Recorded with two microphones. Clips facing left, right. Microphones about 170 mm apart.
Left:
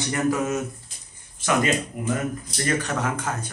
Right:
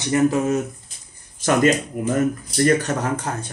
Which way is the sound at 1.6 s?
40° right (ahead or behind).